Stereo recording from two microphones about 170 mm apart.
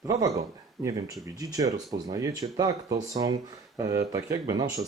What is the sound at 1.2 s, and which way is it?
Speech, 20° right (ahead or behind).